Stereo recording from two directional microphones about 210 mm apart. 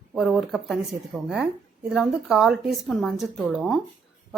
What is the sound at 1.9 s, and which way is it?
A woman's voice, centre (ahead or behind).